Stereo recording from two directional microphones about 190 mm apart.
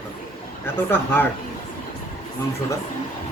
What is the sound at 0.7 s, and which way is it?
Speech, 10° left (ahead or behind).